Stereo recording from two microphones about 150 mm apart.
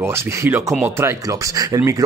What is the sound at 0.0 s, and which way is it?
Speech, 15° right (ahead or behind).